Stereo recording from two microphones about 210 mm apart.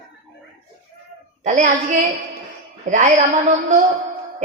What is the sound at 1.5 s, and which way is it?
A man's voice, 35° right (ahead or behind).